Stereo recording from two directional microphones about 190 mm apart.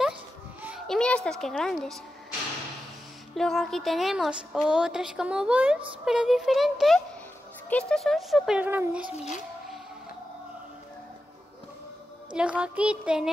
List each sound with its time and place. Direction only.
0.6 s a child's voice: 5° right (ahead or behind)
3.3 s speech: centre (ahead or behind)
9.1 s a child's voice: 35° left (ahead or behind)
12.3 s speech: 5° right (ahead or behind)